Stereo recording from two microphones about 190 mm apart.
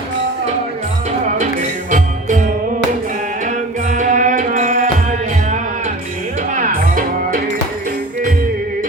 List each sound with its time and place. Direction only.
3.4 s music: 40° right (ahead or behind)
6.5 s music: 45° right (ahead or behind)